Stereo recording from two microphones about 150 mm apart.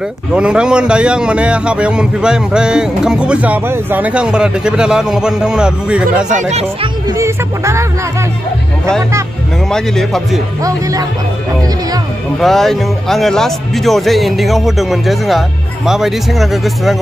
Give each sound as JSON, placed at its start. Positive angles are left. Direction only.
{"t": 0.3, "sound": "a man's voice", "side_deg": -5}
{"t": 7.1, "sound": "speech", "side_deg": -20}
{"t": 9.7, "sound": "speech", "side_deg": 5}
{"t": 10.6, "sound": "speech", "side_deg": -25}
{"t": 12.4, "sound": "speech", "side_deg": 0}